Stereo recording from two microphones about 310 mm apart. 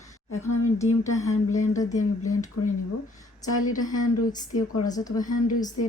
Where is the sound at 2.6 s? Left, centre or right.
Left.